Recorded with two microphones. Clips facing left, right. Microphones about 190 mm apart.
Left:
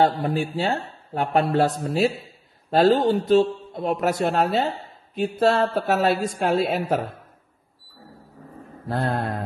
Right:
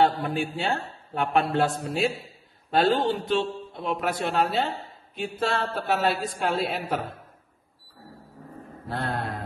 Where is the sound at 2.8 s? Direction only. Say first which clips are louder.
Left 5 dB; 40° left (ahead or behind).